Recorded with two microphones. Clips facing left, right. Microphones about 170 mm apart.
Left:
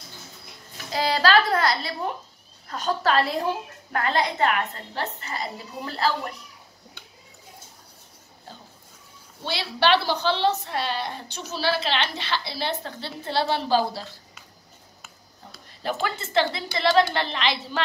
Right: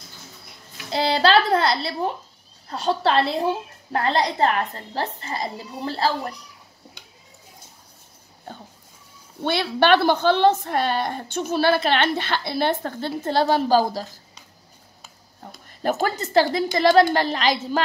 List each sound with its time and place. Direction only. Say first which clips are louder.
0.9 s a sound: right 2 dB; 30° right (ahead or behind)
2.7 s a woman's voice: right 2 dB; 30° right (ahead or behind)
9.4 s a woman's voice: right 5 dB; 55° right (ahead or behind)